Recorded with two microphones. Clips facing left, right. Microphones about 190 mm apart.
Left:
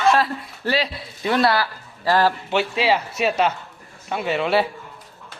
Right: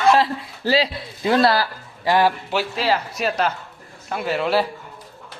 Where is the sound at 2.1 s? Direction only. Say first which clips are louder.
Right 1 dB; 15° right (ahead or behind).